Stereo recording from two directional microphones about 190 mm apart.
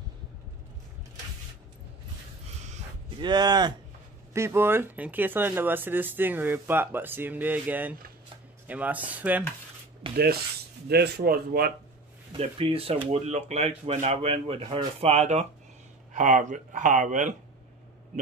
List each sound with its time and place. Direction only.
3.2 s speech: 20° right (ahead or behind)
10.1 s speech: 55° right (ahead or behind)
12.4 s speech: 30° right (ahead or behind)